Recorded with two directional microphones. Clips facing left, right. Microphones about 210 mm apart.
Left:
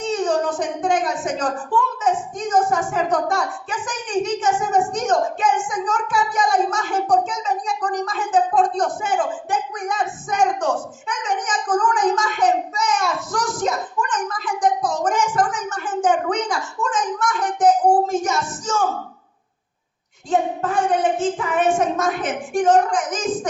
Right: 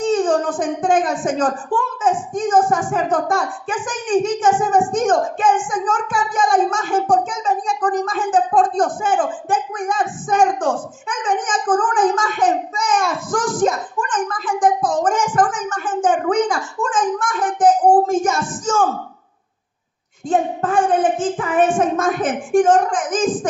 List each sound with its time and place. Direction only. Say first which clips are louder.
0.0 s a child's voice: right 4 dB; 50° right (ahead or behind)
20.3 s a child's voice: right 2 dB; 50° right (ahead or behind)